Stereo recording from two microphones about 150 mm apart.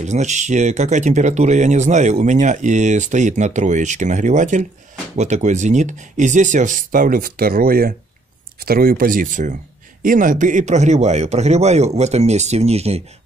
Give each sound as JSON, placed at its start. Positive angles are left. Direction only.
{"t": 0.0, "sound": "speech", "side_deg": -50}